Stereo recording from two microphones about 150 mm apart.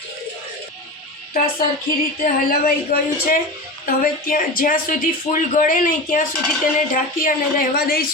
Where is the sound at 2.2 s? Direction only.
70° left (ahead or behind).